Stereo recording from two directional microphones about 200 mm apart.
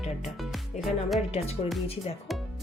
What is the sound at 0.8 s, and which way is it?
Speech, centre (ahead or behind).